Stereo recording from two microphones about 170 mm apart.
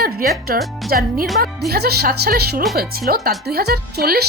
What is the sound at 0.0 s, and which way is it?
Speech, 60° right (ahead or behind).